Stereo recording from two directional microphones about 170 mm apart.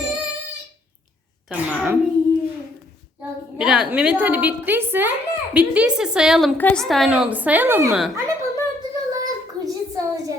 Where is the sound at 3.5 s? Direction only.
5° right (ahead or behind).